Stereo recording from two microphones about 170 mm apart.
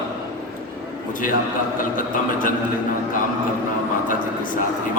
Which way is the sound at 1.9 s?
55° left (ahead or behind).